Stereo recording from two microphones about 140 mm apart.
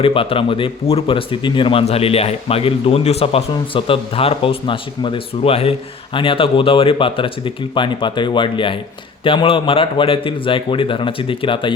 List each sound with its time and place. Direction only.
0.0 s speech: 40° left (ahead or behind)